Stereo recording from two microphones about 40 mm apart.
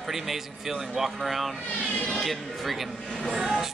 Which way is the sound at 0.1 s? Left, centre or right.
Centre.